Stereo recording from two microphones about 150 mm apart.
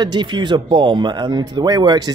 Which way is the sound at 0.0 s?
30° right (ahead or behind).